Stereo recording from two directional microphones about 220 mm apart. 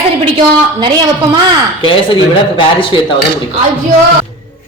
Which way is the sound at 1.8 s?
25° left (ahead or behind).